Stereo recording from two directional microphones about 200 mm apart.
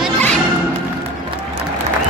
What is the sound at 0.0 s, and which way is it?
Music, 5° left (ahead or behind).